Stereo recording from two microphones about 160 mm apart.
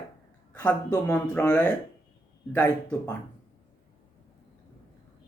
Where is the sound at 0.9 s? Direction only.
15° left (ahead or behind).